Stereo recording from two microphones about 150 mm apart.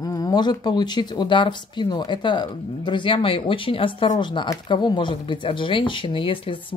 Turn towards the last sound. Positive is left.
turn(degrees=35)  # may be behind; listen again after turning